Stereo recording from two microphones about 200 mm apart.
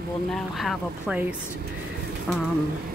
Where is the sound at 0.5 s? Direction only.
5° right (ahead or behind).